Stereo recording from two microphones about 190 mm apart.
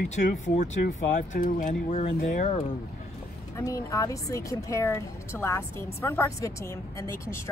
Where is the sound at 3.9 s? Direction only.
15° left (ahead or behind).